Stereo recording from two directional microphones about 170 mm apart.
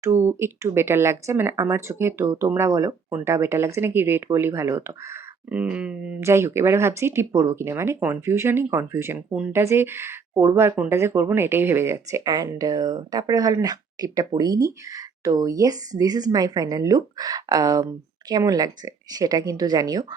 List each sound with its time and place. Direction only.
0.0 s speech: 15° right (ahead or behind)